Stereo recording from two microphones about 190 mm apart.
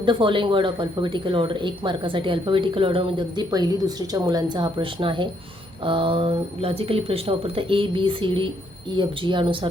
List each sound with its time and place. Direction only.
0.0 s speech: 25° right (ahead or behind)